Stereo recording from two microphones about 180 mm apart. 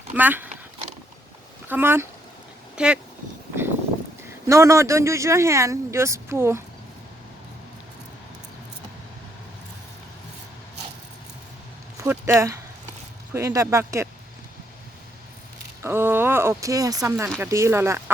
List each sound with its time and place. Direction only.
0.1 s speech: 10° right (ahead or behind)
1.6 s speech: 10° right (ahead or behind)
4.4 s speech: 15° right (ahead or behind)
11.9 s speech: 15° right (ahead or behind)
15.8 s speech: 15° right (ahead or behind)